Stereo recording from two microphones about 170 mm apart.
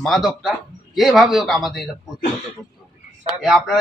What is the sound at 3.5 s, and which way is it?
Speech, centre (ahead or behind).